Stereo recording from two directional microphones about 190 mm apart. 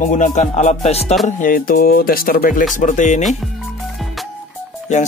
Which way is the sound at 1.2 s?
45° left (ahead or behind).